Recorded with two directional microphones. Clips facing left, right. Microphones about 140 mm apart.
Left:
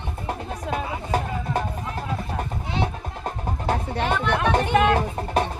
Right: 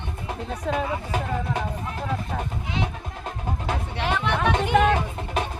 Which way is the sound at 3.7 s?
40° left (ahead or behind).